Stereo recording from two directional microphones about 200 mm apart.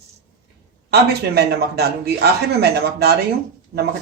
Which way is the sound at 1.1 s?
55° right (ahead or behind).